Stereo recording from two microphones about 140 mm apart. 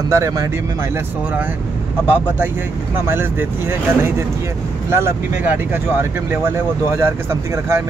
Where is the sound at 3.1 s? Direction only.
15° right (ahead or behind).